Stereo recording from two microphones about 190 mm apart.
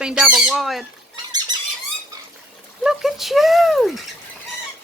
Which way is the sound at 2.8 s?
Centre (ahead or behind).